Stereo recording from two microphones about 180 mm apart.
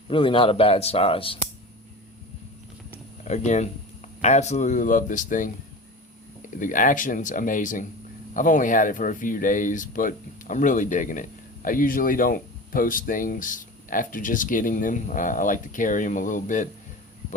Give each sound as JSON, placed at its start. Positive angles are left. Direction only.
{"t": 0.1, "sound": "speech", "side_deg": 30}
{"t": 3.2, "sound": "speech", "side_deg": 40}
{"t": 6.6, "sound": "speech", "side_deg": 45}